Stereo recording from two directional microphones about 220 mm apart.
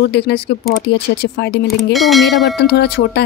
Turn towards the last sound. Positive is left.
turn(degrees=50)  # may be behind; listen again after turning